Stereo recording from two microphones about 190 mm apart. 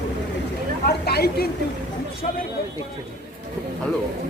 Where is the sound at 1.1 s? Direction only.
55° left (ahead or behind).